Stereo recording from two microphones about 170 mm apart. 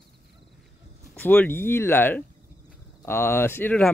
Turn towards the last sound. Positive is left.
turn(degrees=10)  # may be behind; listen again after turning